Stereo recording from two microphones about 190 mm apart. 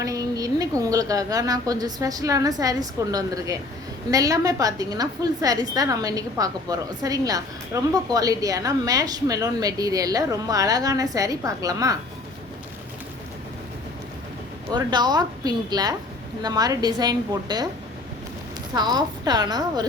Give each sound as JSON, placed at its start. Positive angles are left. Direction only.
{"t": 0.0, "sound": "a sound", "side_deg": -20}
{"t": 0.8, "sound": "a woman's voice", "side_deg": -20}
{"t": 14.7, "sound": "a woman's voice", "side_deg": -25}
{"t": 18.7, "sound": "a woman's voice", "side_deg": -20}